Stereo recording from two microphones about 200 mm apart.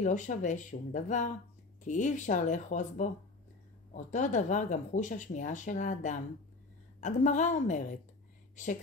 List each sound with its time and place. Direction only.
0.0 s speech: 40° left (ahead or behind)